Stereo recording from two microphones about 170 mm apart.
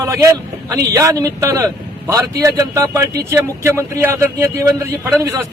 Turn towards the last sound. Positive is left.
turn(degrees=-15)  # may be behind; listen again after turning